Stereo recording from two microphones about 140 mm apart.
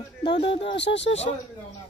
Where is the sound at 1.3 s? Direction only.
70° left (ahead or behind).